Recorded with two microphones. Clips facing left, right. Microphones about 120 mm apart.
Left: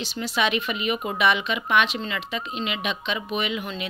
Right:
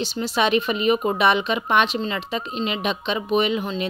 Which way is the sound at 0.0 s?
35° right (ahead or behind).